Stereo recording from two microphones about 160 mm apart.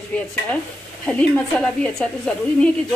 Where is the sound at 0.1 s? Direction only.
5° left (ahead or behind).